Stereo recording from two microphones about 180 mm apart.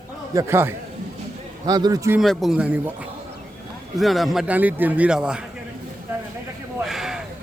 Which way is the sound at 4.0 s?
Centre (ahead or behind).